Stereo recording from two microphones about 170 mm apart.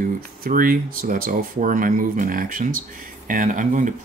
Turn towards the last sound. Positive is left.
turn(degrees=-50)  # may be behind; listen again after turning